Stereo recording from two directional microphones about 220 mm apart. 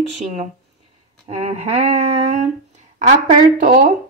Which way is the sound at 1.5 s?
30° right (ahead or behind).